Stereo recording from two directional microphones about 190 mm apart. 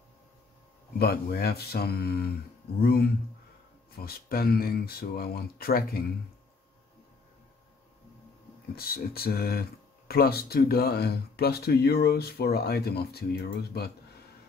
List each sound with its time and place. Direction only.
0.9 s speech: 55° left (ahead or behind)
8.7 s speech: 55° left (ahead or behind)